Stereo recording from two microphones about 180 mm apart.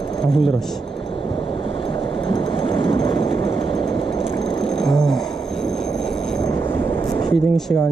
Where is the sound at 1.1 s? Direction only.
30° left (ahead or behind).